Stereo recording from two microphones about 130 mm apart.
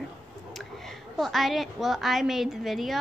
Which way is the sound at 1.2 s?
Centre (ahead or behind).